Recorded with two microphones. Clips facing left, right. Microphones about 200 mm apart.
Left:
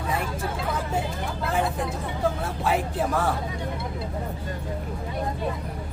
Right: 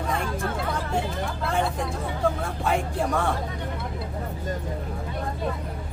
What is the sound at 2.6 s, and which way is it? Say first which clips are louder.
Speech: even; 5° left (ahead or behind).